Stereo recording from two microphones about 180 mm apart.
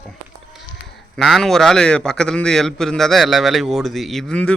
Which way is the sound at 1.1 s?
Centre (ahead or behind).